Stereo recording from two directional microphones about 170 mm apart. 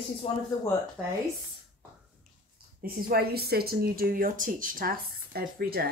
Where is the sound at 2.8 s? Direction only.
65° right (ahead or behind).